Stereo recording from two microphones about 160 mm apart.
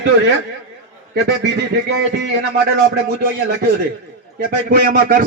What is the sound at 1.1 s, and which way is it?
A man's voice, 90° right.